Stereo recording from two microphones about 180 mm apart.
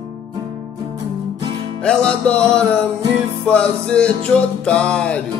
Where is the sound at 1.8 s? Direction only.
5° left (ahead or behind).